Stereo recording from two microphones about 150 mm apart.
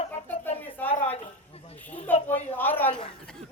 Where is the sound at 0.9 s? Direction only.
40° left (ahead or behind).